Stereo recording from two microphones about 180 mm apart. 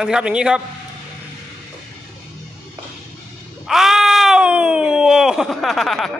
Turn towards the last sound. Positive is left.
turn(degrees=0)  # may be behind; listen again after turning